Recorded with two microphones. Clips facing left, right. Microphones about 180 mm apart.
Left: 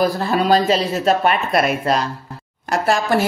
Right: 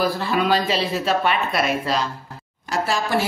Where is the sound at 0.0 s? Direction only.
45° left (ahead or behind).